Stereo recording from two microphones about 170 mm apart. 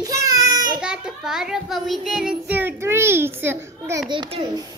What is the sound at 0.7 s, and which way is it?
Child singing, 5° right (ahead or behind).